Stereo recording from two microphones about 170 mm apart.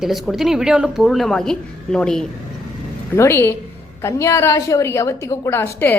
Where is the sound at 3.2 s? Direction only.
15° left (ahead or behind).